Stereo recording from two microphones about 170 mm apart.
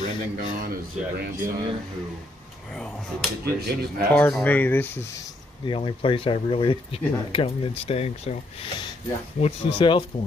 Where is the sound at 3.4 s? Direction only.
65° right (ahead or behind).